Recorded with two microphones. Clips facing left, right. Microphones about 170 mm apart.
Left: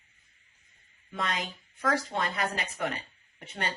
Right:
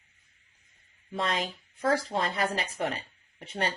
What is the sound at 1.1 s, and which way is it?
Speech, 30° right (ahead or behind).